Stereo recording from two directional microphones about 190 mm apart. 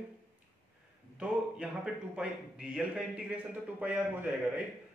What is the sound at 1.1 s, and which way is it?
A man's voice, 5° right (ahead or behind).